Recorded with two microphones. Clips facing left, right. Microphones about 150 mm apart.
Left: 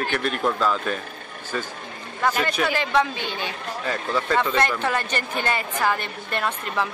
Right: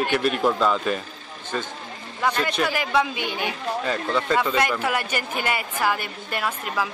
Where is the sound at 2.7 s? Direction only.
10° right (ahead or behind).